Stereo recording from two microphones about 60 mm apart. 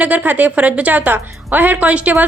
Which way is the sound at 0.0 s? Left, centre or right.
Right.